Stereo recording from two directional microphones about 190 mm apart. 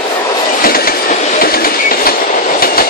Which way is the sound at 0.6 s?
50° left (ahead or behind).